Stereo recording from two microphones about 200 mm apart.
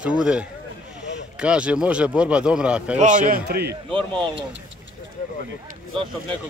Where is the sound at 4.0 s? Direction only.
25° right (ahead or behind).